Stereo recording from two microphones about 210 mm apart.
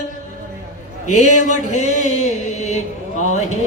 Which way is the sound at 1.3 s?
35° left (ahead or behind).